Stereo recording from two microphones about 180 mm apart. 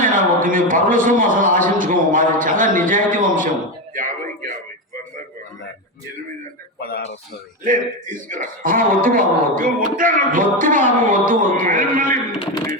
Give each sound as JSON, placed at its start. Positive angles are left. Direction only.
{"t": 0.0, "sound": "speech", "side_deg": -50}
{"t": 6.7, "sound": "speech", "side_deg": 60}
{"t": 7.6, "sound": "speech", "side_deg": -45}